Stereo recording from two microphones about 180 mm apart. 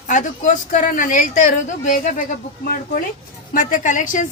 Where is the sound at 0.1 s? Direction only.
45° left (ahead or behind).